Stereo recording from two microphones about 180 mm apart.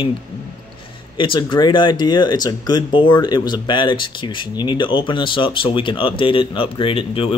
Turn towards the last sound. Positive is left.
turn(degrees=30)  # may be behind; listen again after turning